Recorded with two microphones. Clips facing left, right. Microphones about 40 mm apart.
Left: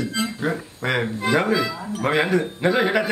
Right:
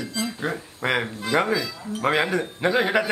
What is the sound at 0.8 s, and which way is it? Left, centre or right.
A man's voice, centre.